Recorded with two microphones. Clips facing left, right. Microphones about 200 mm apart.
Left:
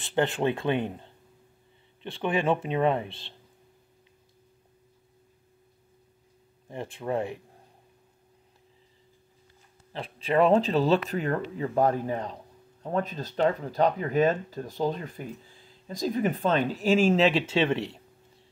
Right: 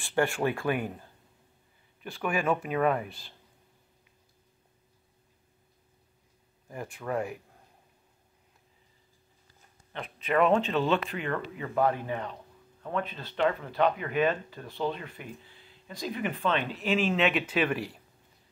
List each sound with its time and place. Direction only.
0.0 s speech: 20° left (ahead or behind)
6.7 s speech: 25° left (ahead or behind)
9.9 s speech: 30° left (ahead or behind)